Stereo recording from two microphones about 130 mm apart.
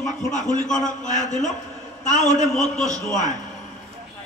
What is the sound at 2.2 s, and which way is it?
Speech, 60° left (ahead or behind).